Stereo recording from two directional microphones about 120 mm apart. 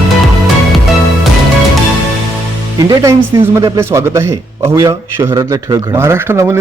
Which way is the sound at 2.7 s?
25° right (ahead or behind).